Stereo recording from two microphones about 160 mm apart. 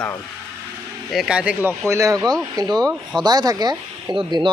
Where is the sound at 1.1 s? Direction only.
5° right (ahead or behind).